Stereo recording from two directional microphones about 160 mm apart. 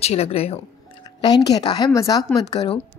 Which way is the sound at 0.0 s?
40° left (ahead or behind).